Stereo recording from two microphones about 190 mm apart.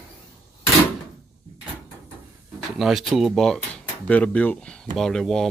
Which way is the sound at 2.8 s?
Centre (ahead or behind).